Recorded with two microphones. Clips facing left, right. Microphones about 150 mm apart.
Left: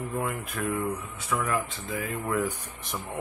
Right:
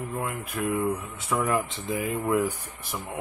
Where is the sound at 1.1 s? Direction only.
25° right (ahead or behind).